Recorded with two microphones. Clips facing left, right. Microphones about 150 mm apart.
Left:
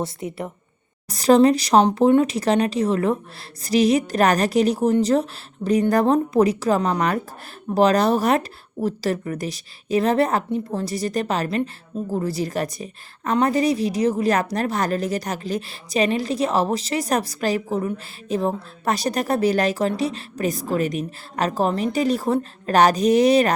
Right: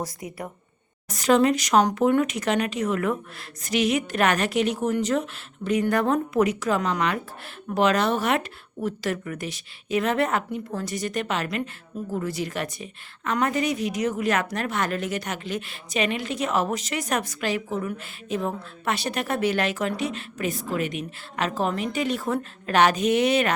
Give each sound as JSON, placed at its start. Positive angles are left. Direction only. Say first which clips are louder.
{"t": 0.0, "sound": "a woman's voice", "louder": "left 5 dB", "side_deg": 25}